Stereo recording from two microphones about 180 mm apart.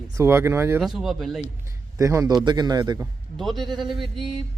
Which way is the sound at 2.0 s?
20° right (ahead or behind).